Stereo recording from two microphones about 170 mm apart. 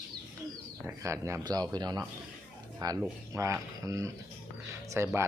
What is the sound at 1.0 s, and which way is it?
Speech, 15° right (ahead or behind).